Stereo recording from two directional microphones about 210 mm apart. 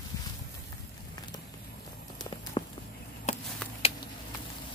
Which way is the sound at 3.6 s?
5° left (ahead or behind).